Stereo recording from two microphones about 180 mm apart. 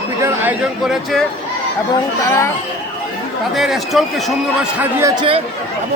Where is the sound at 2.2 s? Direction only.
15° left (ahead or behind).